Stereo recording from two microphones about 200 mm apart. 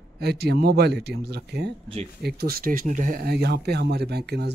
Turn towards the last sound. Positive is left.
turn(degrees=-55)  # may be behind; listen again after turning